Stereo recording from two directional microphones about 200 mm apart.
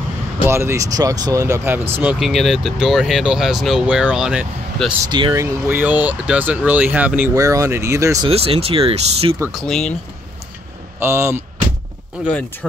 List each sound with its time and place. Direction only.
0.5 s speech: 15° right (ahead or behind)
5.0 s speech: 20° right (ahead or behind)
8.3 s speech: 30° right (ahead or behind)
9.4 s speech: centre (ahead or behind)
11.0 s speech: 15° right (ahead or behind)